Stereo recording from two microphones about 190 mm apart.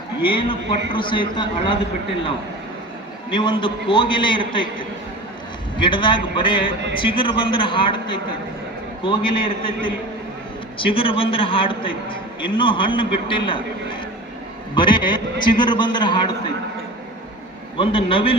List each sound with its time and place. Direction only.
0.3 s a man's voice: 25° left (ahead or behind)
3.2 s a man's voice: 25° left (ahead or behind)
5.7 s a man's voice: 25° left (ahead or behind)
10.8 s a man's voice: 30° left (ahead or behind)
14.8 s a man's voice: 25° left (ahead or behind)
17.7 s a man's voice: 30° left (ahead or behind)